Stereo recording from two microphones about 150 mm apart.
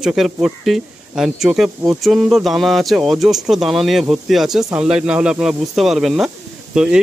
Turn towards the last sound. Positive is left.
turn(degrees=-5)  # may be behind; listen again after turning